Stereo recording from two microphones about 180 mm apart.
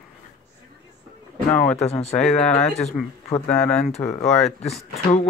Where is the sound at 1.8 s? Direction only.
35° left (ahead or behind).